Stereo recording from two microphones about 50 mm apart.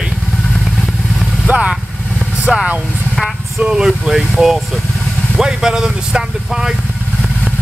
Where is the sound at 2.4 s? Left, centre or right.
Centre.